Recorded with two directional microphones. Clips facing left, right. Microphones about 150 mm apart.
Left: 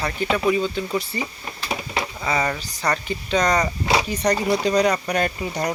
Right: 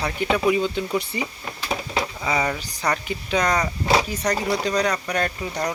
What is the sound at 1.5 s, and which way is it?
Speech, 5° left (ahead or behind).